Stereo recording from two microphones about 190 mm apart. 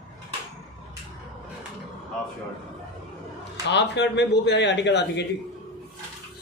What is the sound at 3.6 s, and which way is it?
Speech, 65° left (ahead or behind).